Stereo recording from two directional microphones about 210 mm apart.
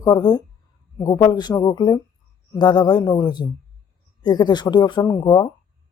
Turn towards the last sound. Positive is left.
turn(degrees=20)  # may be behind; listen again after turning